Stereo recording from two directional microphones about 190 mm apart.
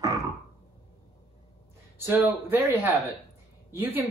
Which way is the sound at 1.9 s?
10° right (ahead or behind).